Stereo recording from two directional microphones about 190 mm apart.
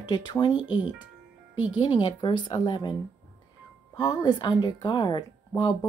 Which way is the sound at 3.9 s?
20° left (ahead or behind).